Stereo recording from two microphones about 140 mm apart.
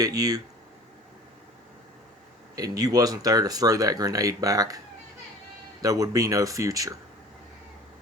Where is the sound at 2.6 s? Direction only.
25° right (ahead or behind).